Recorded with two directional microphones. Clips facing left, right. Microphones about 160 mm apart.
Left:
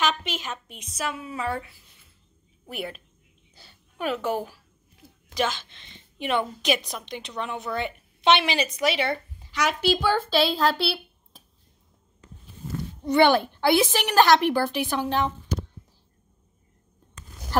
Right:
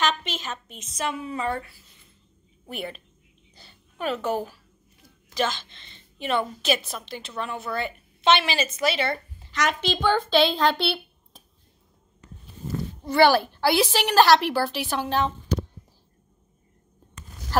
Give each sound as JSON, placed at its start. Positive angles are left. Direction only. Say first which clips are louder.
{"t": 0.0, "sound": "a woman's voice", "louder": "even", "side_deg": 10}
{"t": 13.0, "sound": "a woman's voice", "louder": "even", "side_deg": 20}